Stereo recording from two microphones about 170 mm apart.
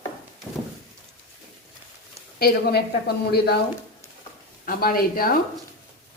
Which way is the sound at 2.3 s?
70° left (ahead or behind).